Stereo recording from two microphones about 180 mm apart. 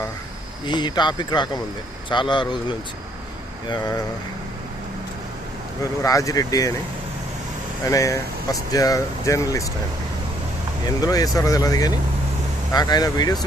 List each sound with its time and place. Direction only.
0.6 s speech: 25° left (ahead or behind)
5.8 s speech: 20° left (ahead or behind)
7.9 s speech: 20° left (ahead or behind)
10.8 s speech: 20° left (ahead or behind)